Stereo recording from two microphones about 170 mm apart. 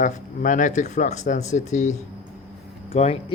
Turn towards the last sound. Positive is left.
turn(degrees=35)  # may be behind; listen again after turning